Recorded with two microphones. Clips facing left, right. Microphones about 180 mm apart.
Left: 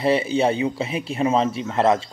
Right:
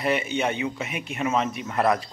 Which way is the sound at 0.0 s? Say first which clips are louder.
Left 6 dB; 30° left (ahead or behind).